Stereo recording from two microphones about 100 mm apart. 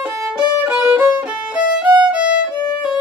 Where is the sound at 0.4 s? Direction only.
10° right (ahead or behind).